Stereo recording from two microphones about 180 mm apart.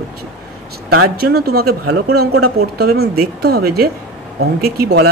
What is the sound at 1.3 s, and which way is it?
Speech, 60° right (ahead or behind).